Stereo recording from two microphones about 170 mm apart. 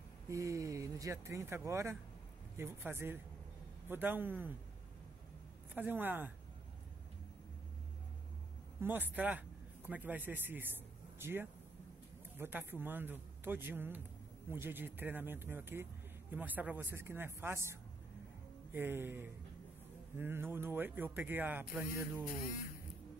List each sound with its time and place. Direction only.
0.3 s speech: 20° right (ahead or behind)
5.8 s speech: 10° right (ahead or behind)
8.8 s speech: 10° right (ahead or behind)